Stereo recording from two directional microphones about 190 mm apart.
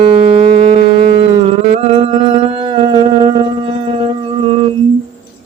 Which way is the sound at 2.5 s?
30° right (ahead or behind).